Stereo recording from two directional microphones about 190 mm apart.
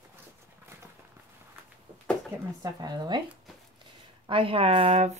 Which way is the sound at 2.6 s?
20° right (ahead or behind).